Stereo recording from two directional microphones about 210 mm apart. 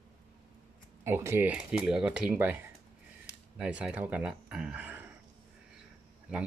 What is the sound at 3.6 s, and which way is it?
Speech, 5° right (ahead or behind).